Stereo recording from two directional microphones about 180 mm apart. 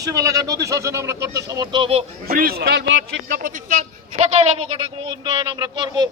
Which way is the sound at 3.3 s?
50° right (ahead or behind).